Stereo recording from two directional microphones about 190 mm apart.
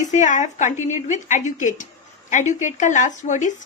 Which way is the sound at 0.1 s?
40° left (ahead or behind).